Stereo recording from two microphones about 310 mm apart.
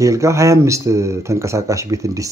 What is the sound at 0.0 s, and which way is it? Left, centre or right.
Speech, centre.